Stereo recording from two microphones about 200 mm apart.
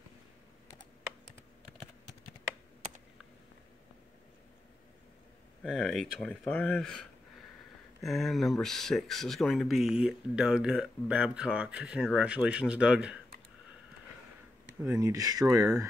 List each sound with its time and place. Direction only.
5.6 s speech: centre (ahead or behind)
14.8 s speech: 15° right (ahead or behind)